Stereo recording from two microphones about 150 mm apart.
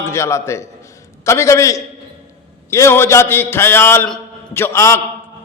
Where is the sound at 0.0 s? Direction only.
20° left (ahead or behind).